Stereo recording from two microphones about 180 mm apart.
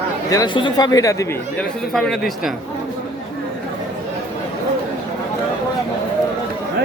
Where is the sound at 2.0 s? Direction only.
Centre (ahead or behind).